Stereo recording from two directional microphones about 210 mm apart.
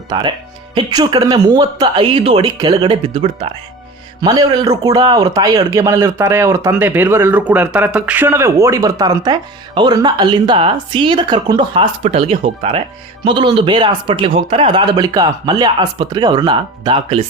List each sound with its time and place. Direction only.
0.1 s a man's voice: 20° right (ahead or behind)